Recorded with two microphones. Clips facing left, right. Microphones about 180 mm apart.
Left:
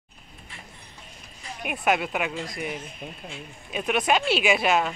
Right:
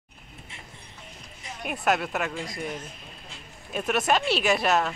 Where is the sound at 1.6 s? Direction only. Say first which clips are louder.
Left 1 dB; 5° left (ahead or behind).